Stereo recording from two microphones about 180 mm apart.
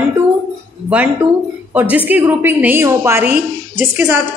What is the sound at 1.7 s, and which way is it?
A woman's voice, 10° right (ahead or behind).